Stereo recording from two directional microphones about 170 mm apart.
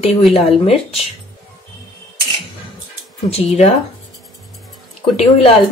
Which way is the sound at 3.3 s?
40° left (ahead or behind).